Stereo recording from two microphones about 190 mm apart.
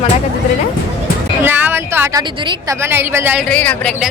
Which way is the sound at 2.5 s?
15° right (ahead or behind).